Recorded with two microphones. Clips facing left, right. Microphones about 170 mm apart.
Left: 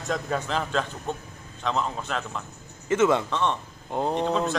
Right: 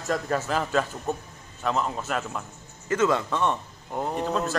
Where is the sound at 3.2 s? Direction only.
10° right (ahead or behind).